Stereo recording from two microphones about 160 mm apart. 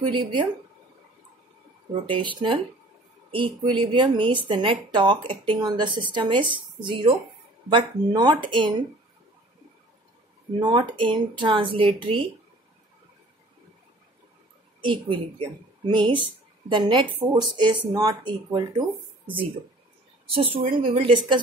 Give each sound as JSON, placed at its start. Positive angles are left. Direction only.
{"t": 0.0, "sound": "speech", "side_deg": -30}
{"t": 2.0, "sound": "speech", "side_deg": -30}
{"t": 10.6, "sound": "speech", "side_deg": -30}
{"t": 14.8, "sound": "speech", "side_deg": -30}
{"t": 20.2, "sound": "speech", "side_deg": -35}